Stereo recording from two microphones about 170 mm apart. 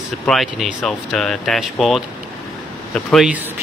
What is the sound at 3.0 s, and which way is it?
Speech, 5° right (ahead or behind).